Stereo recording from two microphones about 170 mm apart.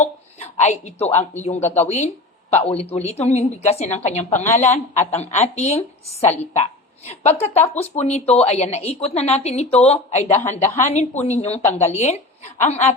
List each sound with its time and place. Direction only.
0.0 s a woman's voice: 45° left (ahead or behind)
7.3 s a woman's voice: 40° left (ahead or behind)